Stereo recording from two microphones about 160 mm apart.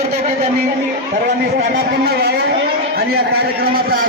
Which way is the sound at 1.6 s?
90° right.